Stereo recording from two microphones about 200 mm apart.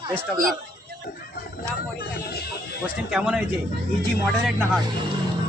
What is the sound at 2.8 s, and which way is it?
Speech, 5° right (ahead or behind).